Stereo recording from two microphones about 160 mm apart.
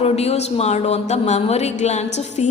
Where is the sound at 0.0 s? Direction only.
40° left (ahead or behind).